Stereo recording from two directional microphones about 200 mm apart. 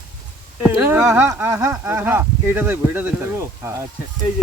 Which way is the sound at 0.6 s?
10° right (ahead or behind).